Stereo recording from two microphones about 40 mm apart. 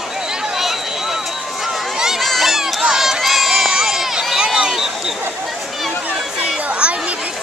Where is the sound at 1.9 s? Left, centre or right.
Centre.